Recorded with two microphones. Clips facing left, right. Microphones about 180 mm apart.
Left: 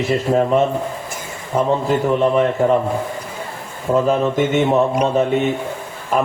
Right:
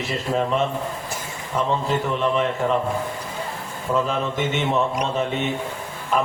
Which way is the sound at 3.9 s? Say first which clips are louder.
Left 7 dB; 45° left (ahead or behind).